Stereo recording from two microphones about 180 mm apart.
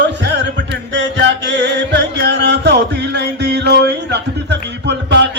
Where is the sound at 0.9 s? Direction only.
80° right.